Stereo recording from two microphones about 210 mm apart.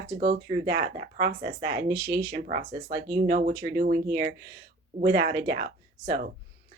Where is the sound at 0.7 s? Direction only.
40° right (ahead or behind).